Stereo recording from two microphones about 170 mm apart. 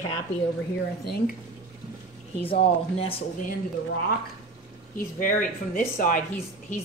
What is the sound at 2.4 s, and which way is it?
Speech, 35° left (ahead or behind).